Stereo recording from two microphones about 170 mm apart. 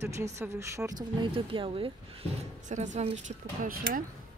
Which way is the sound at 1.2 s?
30° right (ahead or behind).